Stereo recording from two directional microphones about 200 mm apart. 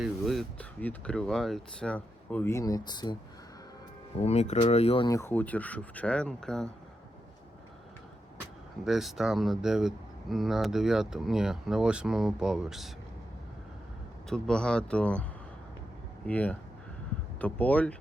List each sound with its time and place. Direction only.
0.0 s speech: centre (ahead or behind); by 3.2 s 20° left (ahead or behind)
4.2 s speech: 35° left (ahead or behind)
5.0 s speech: 15° left (ahead or behind)
8.8 s speech: centre (ahead or behind)
14.3 s speech: 5° left (ahead or behind)